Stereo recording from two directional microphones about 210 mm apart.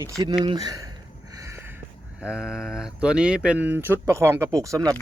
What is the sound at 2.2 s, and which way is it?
Speech, 5° right (ahead or behind).